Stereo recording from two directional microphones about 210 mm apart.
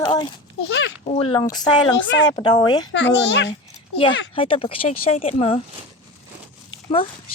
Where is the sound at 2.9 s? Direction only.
55° left (ahead or behind).